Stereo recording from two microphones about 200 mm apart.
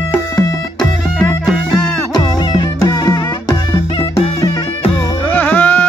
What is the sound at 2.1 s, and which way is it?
Music, 20° left (ahead or behind).